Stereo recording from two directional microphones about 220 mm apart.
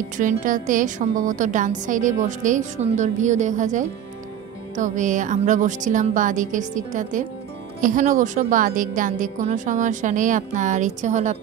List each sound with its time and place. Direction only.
0.2 s a woman's voice: 35° right (ahead or behind)